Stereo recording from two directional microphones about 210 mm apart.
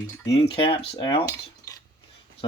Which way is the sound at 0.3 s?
25° left (ahead or behind).